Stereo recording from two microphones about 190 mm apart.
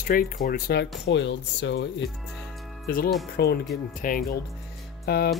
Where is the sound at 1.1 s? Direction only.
70° left (ahead or behind).